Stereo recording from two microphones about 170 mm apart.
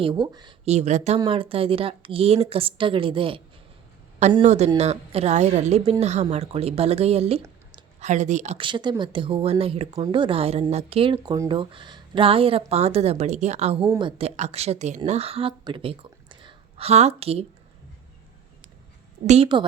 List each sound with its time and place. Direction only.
0.0 s speech: 30° right (ahead or behind)
0.6 s speech: 40° right (ahead or behind)
1.2 s speech: 30° right (ahead or behind)
4.4 s speech: 40° right (ahead or behind)
8.6 s speech: 25° right (ahead or behind)
19.5 s speech: 30° right (ahead or behind)